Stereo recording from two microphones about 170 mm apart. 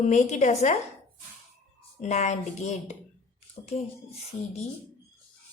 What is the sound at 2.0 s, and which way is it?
A woman's voice, 45° left (ahead or behind).